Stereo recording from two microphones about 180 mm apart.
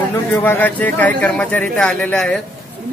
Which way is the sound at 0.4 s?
10° left (ahead or behind).